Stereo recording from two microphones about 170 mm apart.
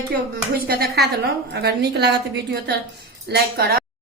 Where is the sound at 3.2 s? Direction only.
70° right (ahead or behind).